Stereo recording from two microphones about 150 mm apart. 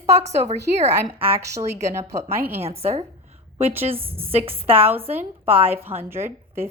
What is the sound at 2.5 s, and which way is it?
A woman's voice, 45° right (ahead or behind).